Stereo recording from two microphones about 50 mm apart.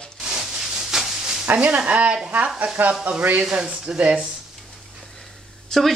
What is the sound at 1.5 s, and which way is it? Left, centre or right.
Speech, right.